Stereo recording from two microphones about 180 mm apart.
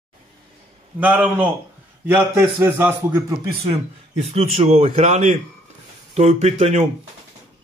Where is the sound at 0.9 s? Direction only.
10° right (ahead or behind).